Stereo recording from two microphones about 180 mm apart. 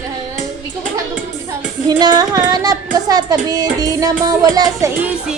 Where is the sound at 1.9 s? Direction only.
20° right (ahead or behind).